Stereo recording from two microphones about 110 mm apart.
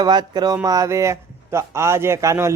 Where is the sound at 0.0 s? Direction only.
40° right (ahead or behind).